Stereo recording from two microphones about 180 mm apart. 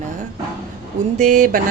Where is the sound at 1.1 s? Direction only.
45° right (ahead or behind).